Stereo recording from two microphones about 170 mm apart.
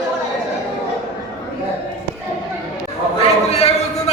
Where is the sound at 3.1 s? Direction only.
35° left (ahead or behind).